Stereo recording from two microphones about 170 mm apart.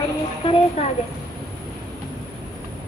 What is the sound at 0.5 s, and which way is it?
Speech, 40° left (ahead or behind).